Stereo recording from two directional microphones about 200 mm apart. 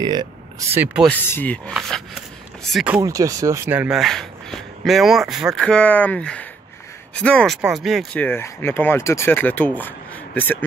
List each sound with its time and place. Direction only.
0.0 s speech: 20° right (ahead or behind)
1.0 s speech: 10° left (ahead or behind)
3.0 s speech: 15° right (ahead or behind); by 10.6 s 10° left (ahead or behind)